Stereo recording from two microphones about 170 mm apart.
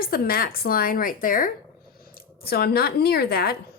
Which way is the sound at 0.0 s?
60° left (ahead or behind).